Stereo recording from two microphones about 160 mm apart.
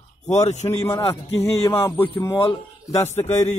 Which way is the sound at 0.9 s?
20° left (ahead or behind).